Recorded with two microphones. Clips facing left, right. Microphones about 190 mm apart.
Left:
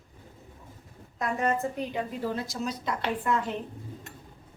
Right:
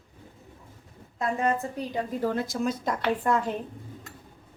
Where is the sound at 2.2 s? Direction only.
50° right (ahead or behind).